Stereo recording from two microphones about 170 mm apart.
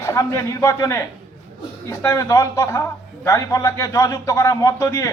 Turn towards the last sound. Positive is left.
turn(degrees=20)  # may be behind; listen again after turning